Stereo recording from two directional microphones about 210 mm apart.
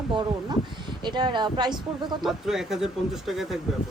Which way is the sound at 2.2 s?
Centre (ahead or behind).